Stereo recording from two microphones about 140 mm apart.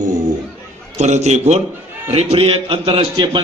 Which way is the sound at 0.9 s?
55° right (ahead or behind).